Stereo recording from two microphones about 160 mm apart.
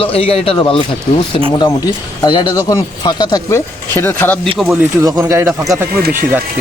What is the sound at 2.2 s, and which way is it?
Speech, 25° left (ahead or behind).